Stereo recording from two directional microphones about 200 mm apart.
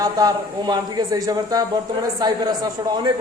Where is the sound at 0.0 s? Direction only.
20° right (ahead or behind).